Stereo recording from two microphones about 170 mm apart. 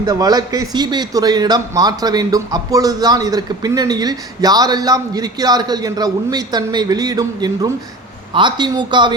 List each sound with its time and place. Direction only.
0.0 s a man's voice: 25° right (ahead or behind)